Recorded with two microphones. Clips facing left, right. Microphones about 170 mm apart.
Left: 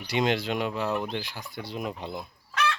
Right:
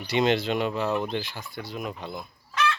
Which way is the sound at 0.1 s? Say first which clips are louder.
Right 3 dB; 10° left (ahead or behind).